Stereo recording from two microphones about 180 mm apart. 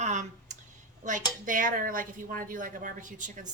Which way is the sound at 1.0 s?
45° right (ahead or behind).